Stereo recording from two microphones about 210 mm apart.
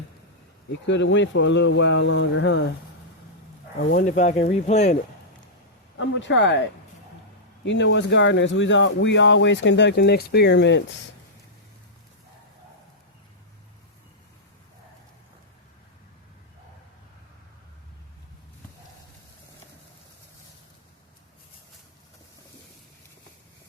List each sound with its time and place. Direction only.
0.7 s speech: 60° left (ahead or behind)
3.8 s speech: 60° left (ahead or behind)
4.0 s speech: 35° left (ahead or behind)
6.0 s speech: 60° left (ahead or behind)